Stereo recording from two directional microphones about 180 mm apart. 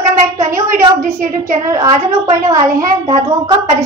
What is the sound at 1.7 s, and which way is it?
A woman's voice, 20° right (ahead or behind).